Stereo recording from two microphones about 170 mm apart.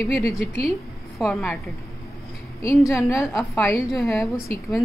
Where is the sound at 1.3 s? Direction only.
5° left (ahead or behind).